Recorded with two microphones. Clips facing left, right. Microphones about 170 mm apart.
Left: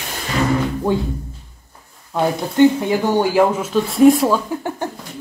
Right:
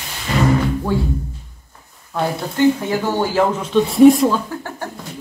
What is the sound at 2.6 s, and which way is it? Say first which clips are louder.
Speech: left 3 dB; 15° left (ahead or behind).